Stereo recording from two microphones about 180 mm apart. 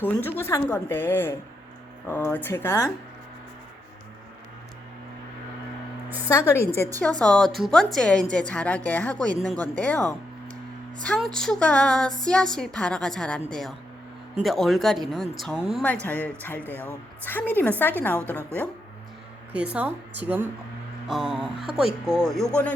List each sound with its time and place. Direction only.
0.0 s a woman's voice: 10° left (ahead or behind)
6.2 s a woman's voice: 15° left (ahead or behind)
7.0 s a woman's voice: 5° left (ahead or behind)
19.7 s a woman's voice: 10° right (ahead or behind)